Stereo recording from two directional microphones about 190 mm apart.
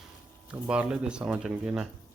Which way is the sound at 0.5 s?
5° right (ahead or behind).